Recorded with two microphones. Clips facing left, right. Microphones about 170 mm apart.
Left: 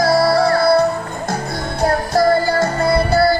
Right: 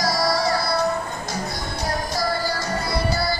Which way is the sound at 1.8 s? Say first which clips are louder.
Left 11 dB; 55° left (ahead or behind).